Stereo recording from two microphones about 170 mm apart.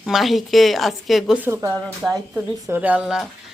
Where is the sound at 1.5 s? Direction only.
15° right (ahead or behind).